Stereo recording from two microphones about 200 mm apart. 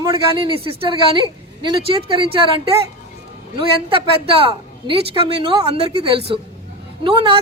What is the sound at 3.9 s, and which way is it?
Speech, 25° right (ahead or behind).